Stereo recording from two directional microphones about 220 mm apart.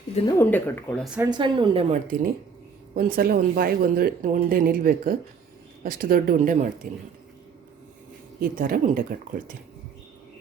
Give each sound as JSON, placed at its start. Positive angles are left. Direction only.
{"t": 0.3, "sound": "speech", "side_deg": 10}
{"t": 1.2, "sound": "a woman's voice", "side_deg": -20}
{"t": 2.9, "sound": "speech", "side_deg": -40}
{"t": 8.4, "sound": "speech", "side_deg": -40}